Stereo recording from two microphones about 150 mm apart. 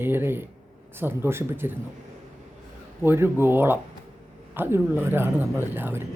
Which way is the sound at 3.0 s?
15° right (ahead or behind).